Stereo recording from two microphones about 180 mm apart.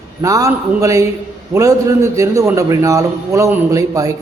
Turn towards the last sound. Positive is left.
turn(degrees=-20)  # may be behind; listen again after turning